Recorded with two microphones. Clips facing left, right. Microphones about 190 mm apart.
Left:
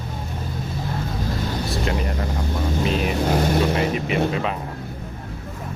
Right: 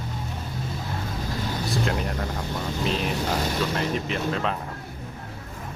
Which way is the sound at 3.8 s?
65° left (ahead or behind).